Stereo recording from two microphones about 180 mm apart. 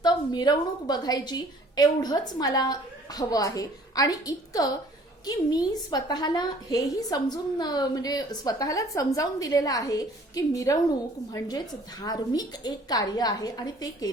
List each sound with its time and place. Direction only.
0.0 s a woman's voice: 25° left (ahead or behind)